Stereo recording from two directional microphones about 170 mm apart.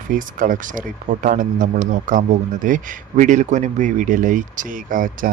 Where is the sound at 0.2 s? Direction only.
50° right (ahead or behind).